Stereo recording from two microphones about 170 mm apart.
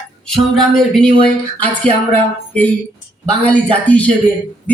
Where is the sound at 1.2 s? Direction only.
10° left (ahead or behind).